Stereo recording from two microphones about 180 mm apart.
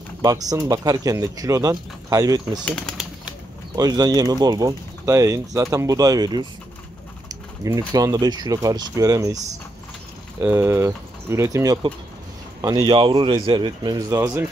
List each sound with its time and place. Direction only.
0.2 s speech: 20° right (ahead or behind)
2.6 s speech: 5° left (ahead or behind)
3.7 s speech: 20° right (ahead or behind)
10.4 s speech: 10° right (ahead or behind)